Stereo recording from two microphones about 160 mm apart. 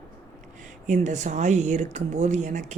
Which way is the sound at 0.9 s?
50° right (ahead or behind).